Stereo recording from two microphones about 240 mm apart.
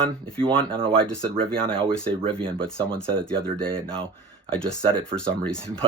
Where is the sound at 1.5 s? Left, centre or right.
Centre.